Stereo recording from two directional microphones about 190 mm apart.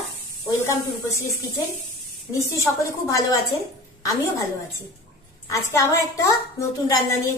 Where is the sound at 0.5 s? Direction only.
15° left (ahead or behind).